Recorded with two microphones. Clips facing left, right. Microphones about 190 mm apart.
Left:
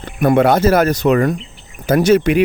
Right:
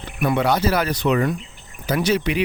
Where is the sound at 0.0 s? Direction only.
50° left (ahead or behind).